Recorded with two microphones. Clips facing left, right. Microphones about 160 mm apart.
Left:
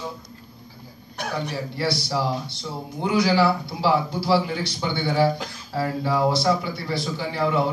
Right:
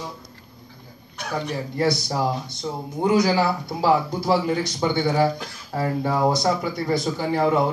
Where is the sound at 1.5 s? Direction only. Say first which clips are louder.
Right 3 dB; 45° right (ahead or behind).